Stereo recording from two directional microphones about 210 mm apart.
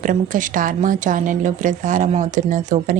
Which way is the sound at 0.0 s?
40° right (ahead or behind).